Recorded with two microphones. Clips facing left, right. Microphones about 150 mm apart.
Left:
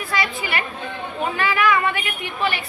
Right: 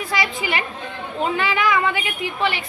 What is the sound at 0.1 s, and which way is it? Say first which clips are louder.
Chatter: even; 15° right (ahead or behind).